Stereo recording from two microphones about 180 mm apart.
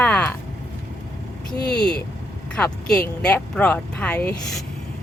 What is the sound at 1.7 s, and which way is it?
Speech, 5° left (ahead or behind).